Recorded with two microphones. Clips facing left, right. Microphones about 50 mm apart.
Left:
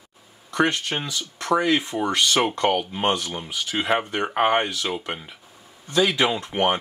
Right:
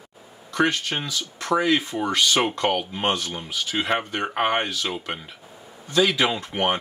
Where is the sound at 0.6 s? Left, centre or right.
Left.